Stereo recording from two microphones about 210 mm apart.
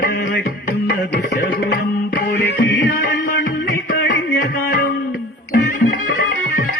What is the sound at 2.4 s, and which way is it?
Music, 50° left (ahead or behind).